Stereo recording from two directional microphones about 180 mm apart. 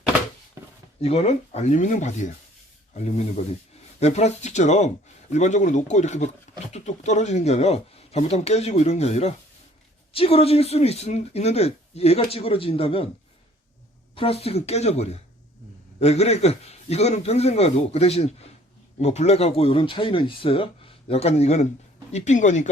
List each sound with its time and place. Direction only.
1.0 s speech: 35° left (ahead or behind)
14.2 s speech: 35° left (ahead or behind)